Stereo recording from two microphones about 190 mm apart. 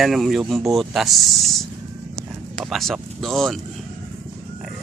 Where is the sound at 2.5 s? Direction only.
Centre (ahead or behind).